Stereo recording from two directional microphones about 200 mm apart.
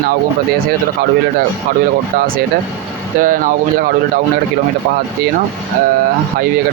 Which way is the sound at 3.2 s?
45° right (ahead or behind).